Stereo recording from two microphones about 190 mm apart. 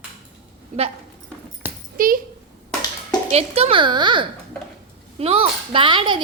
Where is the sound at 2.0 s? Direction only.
45° right (ahead or behind).